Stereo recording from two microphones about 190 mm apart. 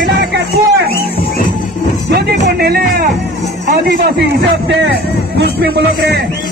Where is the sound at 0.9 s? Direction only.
50° left (ahead or behind).